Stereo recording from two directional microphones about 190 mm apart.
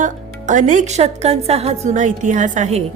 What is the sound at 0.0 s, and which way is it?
Speech, 40° right (ahead or behind).